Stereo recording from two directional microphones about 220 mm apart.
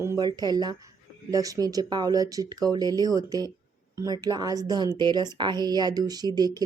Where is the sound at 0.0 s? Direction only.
15° right (ahead or behind).